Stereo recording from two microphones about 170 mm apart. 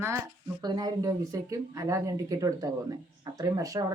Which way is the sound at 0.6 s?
25° right (ahead or behind).